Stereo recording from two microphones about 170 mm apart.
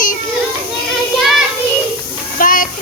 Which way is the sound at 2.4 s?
55° left (ahead or behind).